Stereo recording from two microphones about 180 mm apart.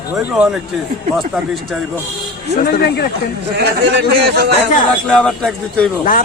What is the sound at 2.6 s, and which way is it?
Speech, 50° left (ahead or behind).